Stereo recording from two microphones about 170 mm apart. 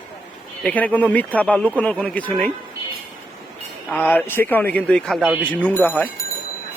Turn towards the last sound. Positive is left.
turn(degrees=10)  # may be behind; listen again after turning